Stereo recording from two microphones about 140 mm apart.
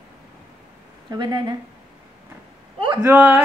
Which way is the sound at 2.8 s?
30° right (ahead or behind).